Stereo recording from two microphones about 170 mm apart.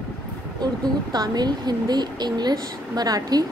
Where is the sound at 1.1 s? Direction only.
25° right (ahead or behind).